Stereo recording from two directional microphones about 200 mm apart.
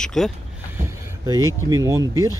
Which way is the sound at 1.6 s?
15° right (ahead or behind).